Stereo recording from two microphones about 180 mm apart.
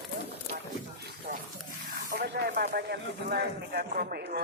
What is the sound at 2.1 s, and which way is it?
Snake, 60° right (ahead or behind).